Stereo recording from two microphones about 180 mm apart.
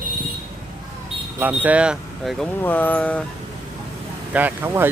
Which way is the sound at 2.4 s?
10° left (ahead or behind).